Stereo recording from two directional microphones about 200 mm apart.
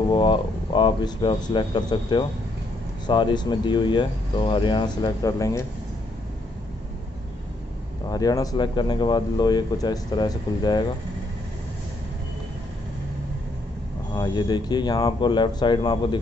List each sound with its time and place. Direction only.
0.1 s speech: 25° left (ahead or behind)
8.1 s speech: 20° left (ahead or behind)
14.1 s speech: 20° left (ahead or behind)